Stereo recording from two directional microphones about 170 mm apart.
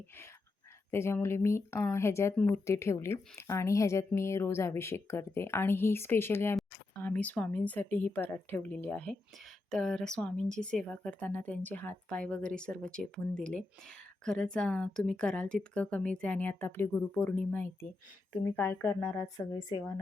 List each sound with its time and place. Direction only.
0.9 s speech: 15° left (ahead or behind)